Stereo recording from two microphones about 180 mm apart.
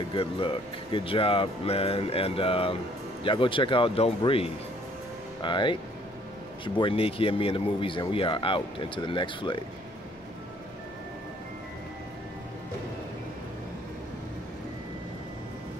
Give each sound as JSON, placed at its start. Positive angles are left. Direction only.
{"t": 0.1, "sound": "speech", "side_deg": 30}